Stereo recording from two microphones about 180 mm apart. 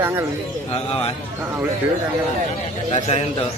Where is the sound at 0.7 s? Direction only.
35° left (ahead or behind).